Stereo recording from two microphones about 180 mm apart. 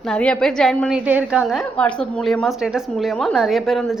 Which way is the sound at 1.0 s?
5° right (ahead or behind).